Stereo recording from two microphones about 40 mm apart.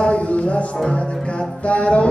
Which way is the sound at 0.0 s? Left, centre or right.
Left.